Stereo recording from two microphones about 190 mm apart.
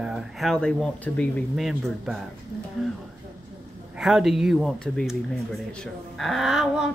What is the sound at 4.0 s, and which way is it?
Speech, 5° right (ahead or behind).